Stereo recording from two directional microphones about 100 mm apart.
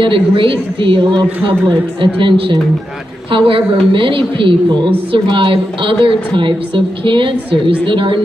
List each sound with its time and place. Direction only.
0.0 s a woman's voice: 60° right (ahead or behind)